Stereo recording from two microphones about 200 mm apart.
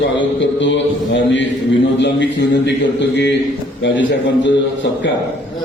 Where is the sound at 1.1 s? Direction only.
65° left (ahead or behind).